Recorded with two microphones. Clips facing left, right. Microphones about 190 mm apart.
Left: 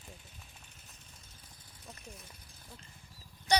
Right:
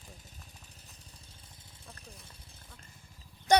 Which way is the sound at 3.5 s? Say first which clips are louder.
Right 5 dB; 50° right (ahead or behind).